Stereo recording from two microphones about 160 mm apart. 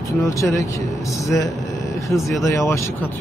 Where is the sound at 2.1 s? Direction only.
Centre (ahead or behind).